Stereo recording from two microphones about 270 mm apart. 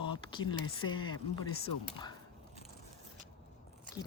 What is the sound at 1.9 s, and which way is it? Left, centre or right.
Speech, centre.